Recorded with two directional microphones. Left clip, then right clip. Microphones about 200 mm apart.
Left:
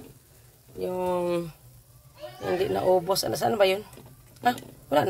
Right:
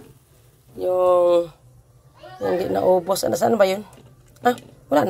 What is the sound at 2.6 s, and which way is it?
Speech, 20° right (ahead or behind).